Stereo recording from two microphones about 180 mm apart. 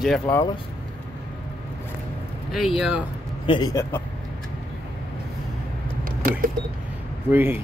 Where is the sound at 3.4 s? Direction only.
25° left (ahead or behind).